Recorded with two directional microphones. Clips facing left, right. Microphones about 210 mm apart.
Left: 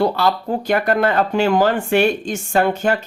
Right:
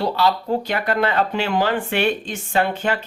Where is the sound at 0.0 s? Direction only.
50° left (ahead or behind).